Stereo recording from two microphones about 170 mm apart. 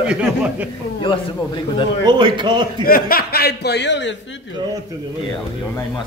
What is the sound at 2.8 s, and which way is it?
A man's voice, 60° left (ahead or behind).